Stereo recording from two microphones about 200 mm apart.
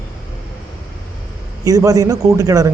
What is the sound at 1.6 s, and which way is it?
A man's voice, 15° right (ahead or behind).